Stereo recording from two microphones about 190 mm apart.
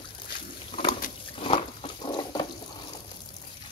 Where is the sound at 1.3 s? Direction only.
30° left (ahead or behind).